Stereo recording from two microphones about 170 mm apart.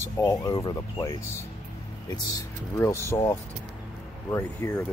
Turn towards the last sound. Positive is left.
turn(degrees=15)  # may be behind; listen again after turning